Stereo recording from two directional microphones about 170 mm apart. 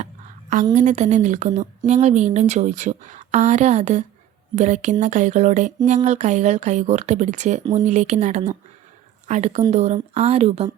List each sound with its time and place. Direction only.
0.5 s speech: 45° right (ahead or behind)